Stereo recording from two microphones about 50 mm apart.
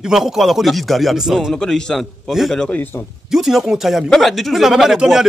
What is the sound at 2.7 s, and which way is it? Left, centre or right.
Speech, left.